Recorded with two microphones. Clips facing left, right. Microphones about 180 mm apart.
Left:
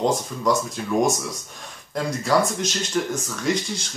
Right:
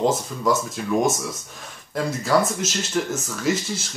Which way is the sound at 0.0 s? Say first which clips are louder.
Even; 5° right (ahead or behind).